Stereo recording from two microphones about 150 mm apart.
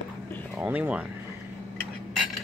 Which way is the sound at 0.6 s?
10° right (ahead or behind).